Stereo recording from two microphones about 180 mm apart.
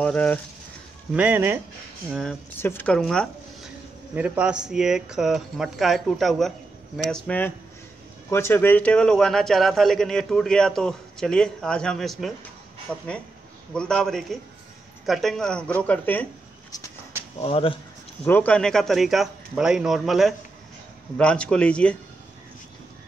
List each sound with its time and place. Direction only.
0.0 s speech: 10° left (ahead or behind)
1.1 s speech: 10° right (ahead or behind)
2.6 s a man's voice: 10° left (ahead or behind)
4.1 s a man's voice: 5° right (ahead or behind); by 16.3 s 10° left (ahead or behind)
17.4 s speech: 30° left (ahead or behind)
18.2 s a man's voice: 10° left (ahead or behind)